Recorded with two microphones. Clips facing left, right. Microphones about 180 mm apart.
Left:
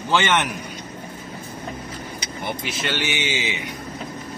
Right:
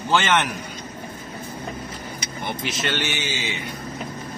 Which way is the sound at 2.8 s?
10° left (ahead or behind).